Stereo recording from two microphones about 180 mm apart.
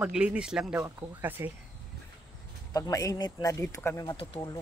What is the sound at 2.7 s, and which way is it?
Speech, 20° left (ahead or behind).